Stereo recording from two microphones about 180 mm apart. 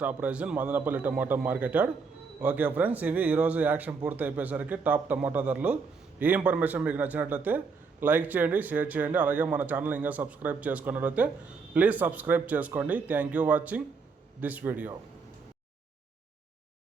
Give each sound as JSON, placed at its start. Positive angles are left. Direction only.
{"t": 0.0, "sound": "speech", "side_deg": -10}